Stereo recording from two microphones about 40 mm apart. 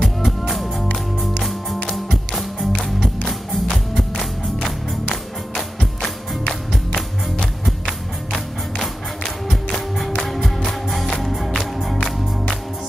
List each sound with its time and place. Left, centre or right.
0.2 s music: centre
8.7 s music: centre